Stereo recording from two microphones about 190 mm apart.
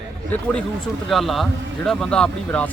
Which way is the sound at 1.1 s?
Centre (ahead or behind).